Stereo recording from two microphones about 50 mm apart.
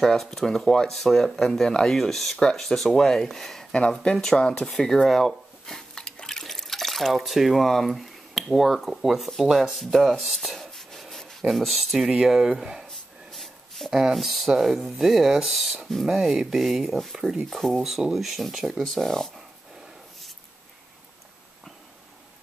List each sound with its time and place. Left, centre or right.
0.0 s speech: centre
2.0 s speech: centre
12.8 s a sound: centre
14.1 s speech: centre
16.2 s speech: centre